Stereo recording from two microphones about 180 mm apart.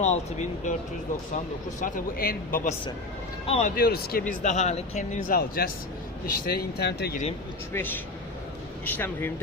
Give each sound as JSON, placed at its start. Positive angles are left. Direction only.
{"t": 0.0, "sound": "speech", "side_deg": 40}
{"t": 1.8, "sound": "speech", "side_deg": 55}
{"t": 3.4, "sound": "speech", "side_deg": 35}
{"t": 3.8, "sound": "speech", "side_deg": 55}
{"t": 4.3, "sound": "speech", "side_deg": 40}
{"t": 7.7, "sound": "speech", "side_deg": 10}